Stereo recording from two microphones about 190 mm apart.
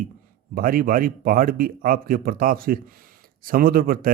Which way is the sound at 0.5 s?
50° right (ahead or behind).